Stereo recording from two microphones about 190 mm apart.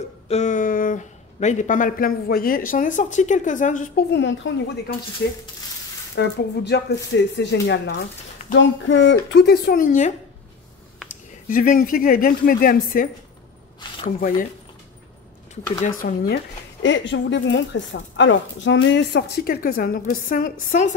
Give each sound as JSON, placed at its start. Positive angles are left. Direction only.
{"t": 0.3, "sound": "speech", "side_deg": 40}
{"t": 4.1, "sound": "a woman's voice", "side_deg": 70}
{"t": 6.1, "sound": "a woman's voice", "side_deg": 65}
{"t": 8.5, "sound": "speech", "side_deg": 75}
{"t": 11.4, "sound": "speech", "side_deg": 45}
{"t": 15.8, "sound": "speech", "side_deg": 50}
{"t": 16.8, "sound": "speech", "side_deg": 75}